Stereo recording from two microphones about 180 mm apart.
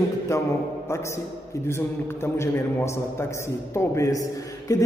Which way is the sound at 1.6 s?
15° left (ahead or behind).